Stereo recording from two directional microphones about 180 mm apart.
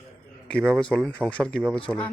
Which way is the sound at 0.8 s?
5° left (ahead or behind).